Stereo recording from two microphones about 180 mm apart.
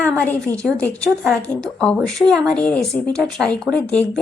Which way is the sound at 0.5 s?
5° left (ahead or behind).